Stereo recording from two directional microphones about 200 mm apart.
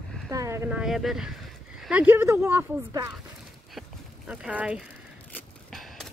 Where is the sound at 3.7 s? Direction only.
5° right (ahead or behind).